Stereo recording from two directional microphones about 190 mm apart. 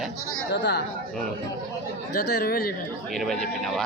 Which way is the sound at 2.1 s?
55° left (ahead or behind).